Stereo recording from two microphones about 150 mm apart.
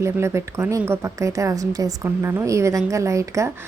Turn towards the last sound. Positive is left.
turn(degrees=-20)  # may be behind; listen again after turning